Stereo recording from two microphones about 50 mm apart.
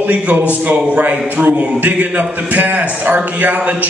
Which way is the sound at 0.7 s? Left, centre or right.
Right.